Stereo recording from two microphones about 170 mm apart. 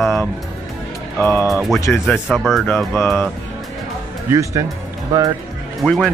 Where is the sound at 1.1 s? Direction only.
15° left (ahead or behind).